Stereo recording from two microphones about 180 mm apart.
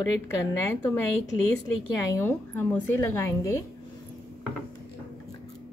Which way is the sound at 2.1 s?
15° left (ahead or behind).